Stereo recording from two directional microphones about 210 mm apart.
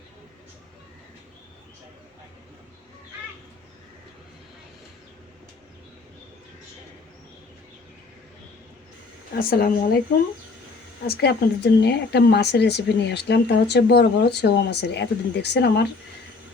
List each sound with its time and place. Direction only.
9.3 s speech: 45° left (ahead or behind)
11.0 s speech: 50° left (ahead or behind)